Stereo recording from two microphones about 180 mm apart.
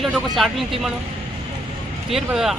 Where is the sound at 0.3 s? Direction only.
Centre (ahead or behind).